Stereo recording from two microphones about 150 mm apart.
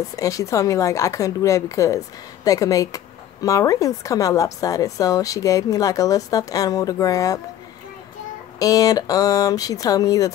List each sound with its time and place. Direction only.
0.1 s a woman's voice: 20° left (ahead or behind)
8.5 s a woman's voice: 25° left (ahead or behind)